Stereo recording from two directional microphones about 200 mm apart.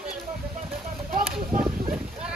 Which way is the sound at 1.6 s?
5° right (ahead or behind).